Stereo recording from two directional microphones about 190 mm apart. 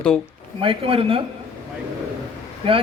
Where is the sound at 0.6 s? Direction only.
30° right (ahead or behind).